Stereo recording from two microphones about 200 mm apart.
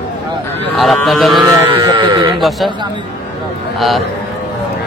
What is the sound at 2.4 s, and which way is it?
Speech, centre (ahead or behind).